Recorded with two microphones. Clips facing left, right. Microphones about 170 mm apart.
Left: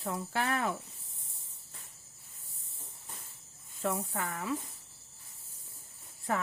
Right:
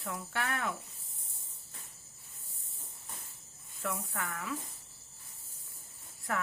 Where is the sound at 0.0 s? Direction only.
30° left (ahead or behind).